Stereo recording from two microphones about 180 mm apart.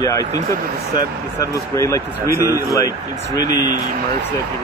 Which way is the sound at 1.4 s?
20° left (ahead or behind).